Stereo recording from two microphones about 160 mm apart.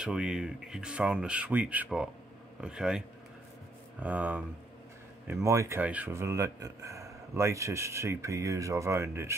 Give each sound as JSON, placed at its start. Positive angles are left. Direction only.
{"t": 0.0, "sound": "speech", "side_deg": -5}
{"t": 4.0, "sound": "speech", "side_deg": -10}